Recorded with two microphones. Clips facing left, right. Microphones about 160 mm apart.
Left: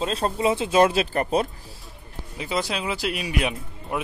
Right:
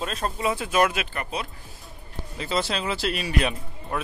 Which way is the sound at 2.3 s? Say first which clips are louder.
Even; 15° left (ahead or behind).